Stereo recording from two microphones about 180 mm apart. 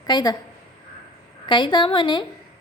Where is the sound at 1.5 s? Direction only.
25° left (ahead or behind).